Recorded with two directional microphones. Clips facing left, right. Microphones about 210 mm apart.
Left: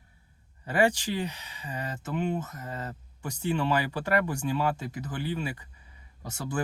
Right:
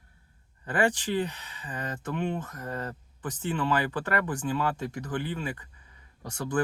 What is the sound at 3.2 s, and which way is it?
Speech, 10° left (ahead or behind).